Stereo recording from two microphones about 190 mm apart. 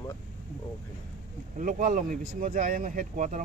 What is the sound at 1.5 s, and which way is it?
Speech, 45° right (ahead or behind).